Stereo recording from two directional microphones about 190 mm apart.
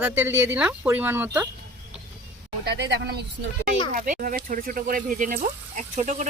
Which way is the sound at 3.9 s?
45° right (ahead or behind).